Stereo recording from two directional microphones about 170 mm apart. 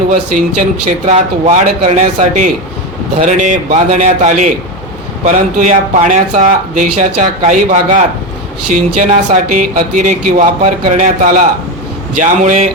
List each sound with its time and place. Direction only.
0.1 s speech: 45° right (ahead or behind)